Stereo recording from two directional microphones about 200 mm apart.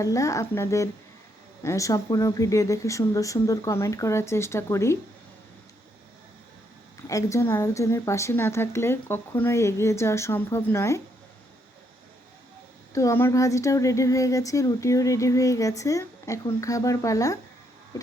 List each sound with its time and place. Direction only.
0.0 s speech: 15° left (ahead or behind)
7.1 s speech: 15° left (ahead or behind)
12.9 s speech: 15° left (ahead or behind)